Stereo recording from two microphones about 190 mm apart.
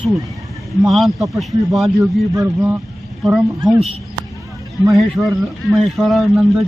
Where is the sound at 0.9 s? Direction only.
Centre (ahead or behind).